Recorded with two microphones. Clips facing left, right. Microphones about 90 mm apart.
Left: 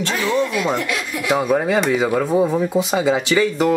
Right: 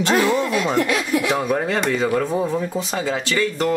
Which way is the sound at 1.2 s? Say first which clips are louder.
Left 3 dB; 10° left (ahead or behind).